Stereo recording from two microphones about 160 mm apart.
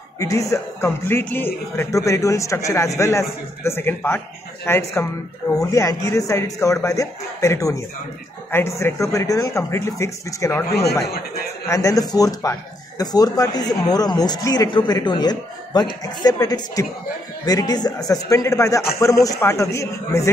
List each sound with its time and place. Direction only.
0.2 s speech: 20° left (ahead or behind)
10.7 s a man's voice: 85° left
11.6 s speech: 20° left (ahead or behind)